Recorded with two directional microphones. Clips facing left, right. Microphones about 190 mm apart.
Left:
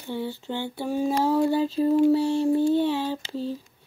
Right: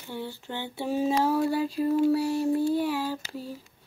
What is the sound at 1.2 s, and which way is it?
Child singing, 20° left (ahead or behind).